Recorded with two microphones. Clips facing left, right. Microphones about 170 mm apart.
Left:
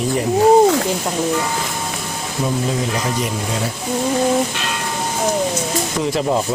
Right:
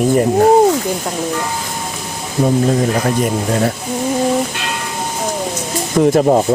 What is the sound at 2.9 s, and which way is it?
Speech, 55° right (ahead or behind).